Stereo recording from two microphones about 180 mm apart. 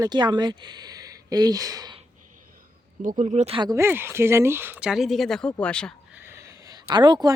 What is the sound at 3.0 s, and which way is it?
Speech, 45° right (ahead or behind).